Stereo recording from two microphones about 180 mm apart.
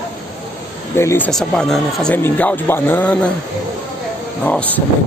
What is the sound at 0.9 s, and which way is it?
Speech, 10° left (ahead or behind).